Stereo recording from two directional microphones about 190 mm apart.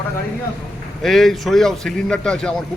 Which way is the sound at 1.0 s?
Centre (ahead or behind).